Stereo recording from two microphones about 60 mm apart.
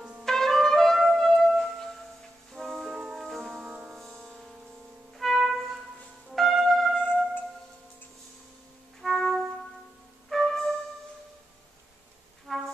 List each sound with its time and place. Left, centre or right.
0.2 s trumpet: centre
1.4 s music: centre
3.5 s music: centre
3.9 s music: centre
6.3 s brass instrument: centre
7.0 s music: left
9.0 s clarinet: centre
10.3 s music: centre
12.5 s brass instrument: centre